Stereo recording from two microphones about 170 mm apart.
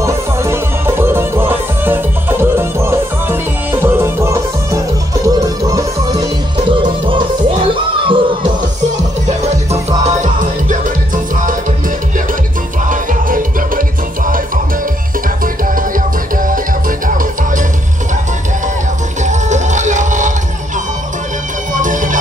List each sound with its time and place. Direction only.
0.0 s music: 15° right (ahead or behind); by 8.4 s 30° right (ahead or behind)
9.4 s music: 40° right (ahead or behind)
12.8 s music: 50° right (ahead or behind)
19.2 s music: 45° right (ahead or behind)
21.7 s bagpipes: 50° right (ahead or behind)